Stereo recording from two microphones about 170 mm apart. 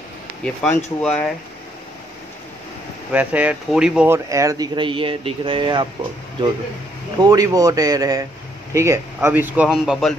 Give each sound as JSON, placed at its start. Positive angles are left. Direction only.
{"t": 0.4, "sound": "speech", "side_deg": 5}
{"t": 3.1, "sound": "speech", "side_deg": -10}
{"t": 4.1, "sound": "speech", "side_deg": -20}
{"t": 7.2, "sound": "speech", "side_deg": -20}